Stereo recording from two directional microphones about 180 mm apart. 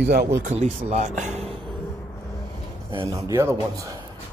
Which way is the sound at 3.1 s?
15° right (ahead or behind).